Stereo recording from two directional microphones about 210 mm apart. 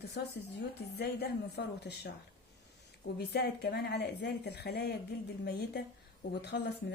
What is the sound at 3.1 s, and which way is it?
A woman's voice, 50° left (ahead or behind).